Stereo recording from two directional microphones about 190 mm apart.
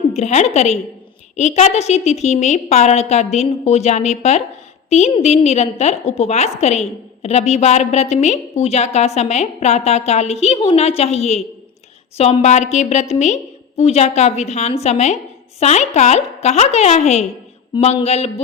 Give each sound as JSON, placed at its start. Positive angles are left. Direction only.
{"t": 0.2, "sound": "a woman's voice", "side_deg": 35}